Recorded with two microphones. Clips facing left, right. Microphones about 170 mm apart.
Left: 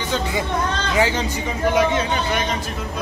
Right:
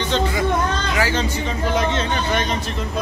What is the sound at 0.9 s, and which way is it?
Speech, 20° left (ahead or behind).